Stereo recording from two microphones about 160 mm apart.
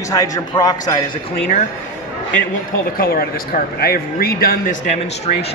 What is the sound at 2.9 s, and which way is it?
A man's voice, 70° left (ahead or behind).